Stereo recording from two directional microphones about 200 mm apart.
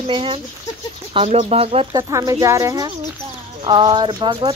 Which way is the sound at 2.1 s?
15° right (ahead or behind).